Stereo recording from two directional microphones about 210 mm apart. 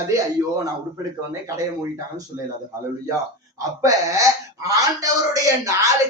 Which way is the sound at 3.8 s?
15° right (ahead or behind).